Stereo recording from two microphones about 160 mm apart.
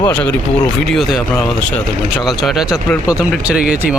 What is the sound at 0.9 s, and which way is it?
Speech, centre (ahead or behind).